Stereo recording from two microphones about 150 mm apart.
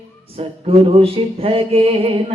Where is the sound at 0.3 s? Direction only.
40° right (ahead or behind).